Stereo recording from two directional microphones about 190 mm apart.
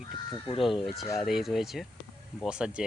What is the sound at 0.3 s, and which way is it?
Speech, 25° left (ahead or behind).